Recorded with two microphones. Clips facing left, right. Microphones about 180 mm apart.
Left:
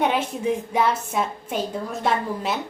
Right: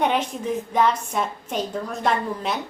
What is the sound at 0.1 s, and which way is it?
A woman's voice, 10° left (ahead or behind).